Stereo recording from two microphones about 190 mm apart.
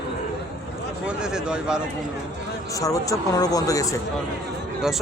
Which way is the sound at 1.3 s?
5° right (ahead or behind).